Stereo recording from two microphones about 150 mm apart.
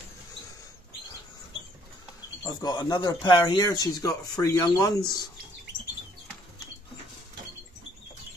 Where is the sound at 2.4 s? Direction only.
25° left (ahead or behind).